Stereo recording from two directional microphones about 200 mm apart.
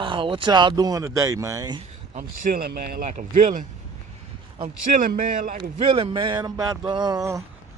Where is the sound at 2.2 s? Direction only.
45° right (ahead or behind).